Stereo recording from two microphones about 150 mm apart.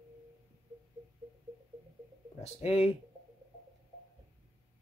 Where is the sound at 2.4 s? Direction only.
40° left (ahead or behind).